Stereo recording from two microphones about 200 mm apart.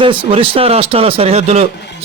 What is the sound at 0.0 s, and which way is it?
Speech, 25° right (ahead or behind).